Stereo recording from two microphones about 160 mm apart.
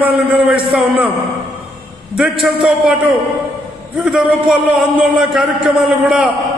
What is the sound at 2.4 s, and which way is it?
A man's voice, 5° right (ahead or behind).